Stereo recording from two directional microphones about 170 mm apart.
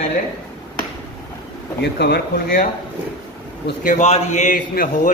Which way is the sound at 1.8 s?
75° left (ahead or behind).